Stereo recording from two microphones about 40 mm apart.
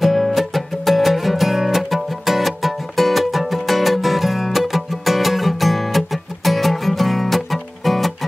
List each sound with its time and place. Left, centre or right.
0.0 s music: centre